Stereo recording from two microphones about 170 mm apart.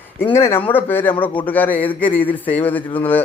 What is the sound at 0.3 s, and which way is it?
Speech, 15° left (ahead or behind).